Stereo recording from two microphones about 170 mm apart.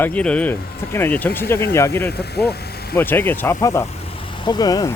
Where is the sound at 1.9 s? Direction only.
70° left (ahead or behind).